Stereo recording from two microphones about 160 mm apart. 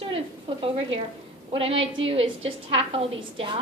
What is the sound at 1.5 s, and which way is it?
A woman's voice, 35° right (ahead or behind).